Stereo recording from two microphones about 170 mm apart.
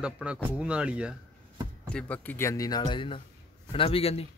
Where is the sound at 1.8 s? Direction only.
5° left (ahead or behind).